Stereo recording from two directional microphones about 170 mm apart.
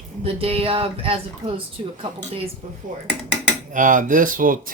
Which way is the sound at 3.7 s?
50° right (ahead or behind).